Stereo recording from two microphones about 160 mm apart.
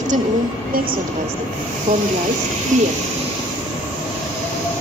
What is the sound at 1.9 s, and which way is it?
Speech, 50° right (ahead or behind).